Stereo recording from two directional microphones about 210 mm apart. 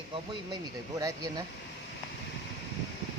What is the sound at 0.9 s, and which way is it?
Speech, 15° right (ahead or behind).